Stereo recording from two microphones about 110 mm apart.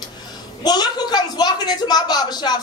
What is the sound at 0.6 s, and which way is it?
Speech, 40° left (ahead or behind).